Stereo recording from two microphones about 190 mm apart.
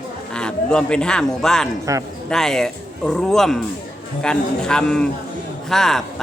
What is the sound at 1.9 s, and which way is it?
Speech, 15° right (ahead or behind).